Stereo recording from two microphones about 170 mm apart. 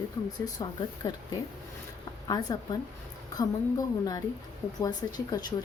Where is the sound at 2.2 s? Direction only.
25° left (ahead or behind).